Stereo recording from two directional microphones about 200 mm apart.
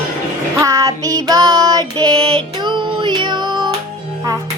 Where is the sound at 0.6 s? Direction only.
15° right (ahead or behind).